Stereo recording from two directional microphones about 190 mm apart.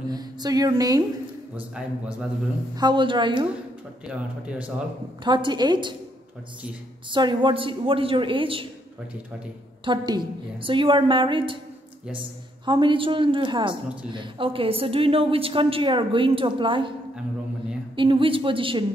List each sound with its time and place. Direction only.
0.1 s a woman's voice: 20° right (ahead or behind)
1.8 s speech: 5° right (ahead or behind)
2.7 s a woman's voice: 25° right (ahead or behind)
4.0 s speech: 5° right (ahead or behind)
5.2 s a woman's voice: 25° right (ahead or behind)
7.1 s a woman's voice: 25° right (ahead or behind)
9.8 s a woman's voice: 25° right (ahead or behind)
12.6 s a woman's voice: 25° right (ahead or behind)
17.9 s a woman's voice: 25° right (ahead or behind)